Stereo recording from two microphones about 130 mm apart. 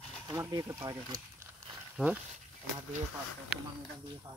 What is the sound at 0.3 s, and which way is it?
Speech, 25° right (ahead or behind).